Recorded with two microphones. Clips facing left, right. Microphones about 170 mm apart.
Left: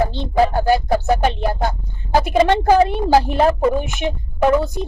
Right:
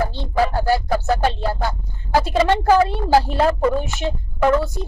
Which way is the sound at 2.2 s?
20° left (ahead or behind).